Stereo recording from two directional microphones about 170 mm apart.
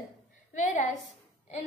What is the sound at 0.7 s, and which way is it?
Speech, 45° left (ahead or behind).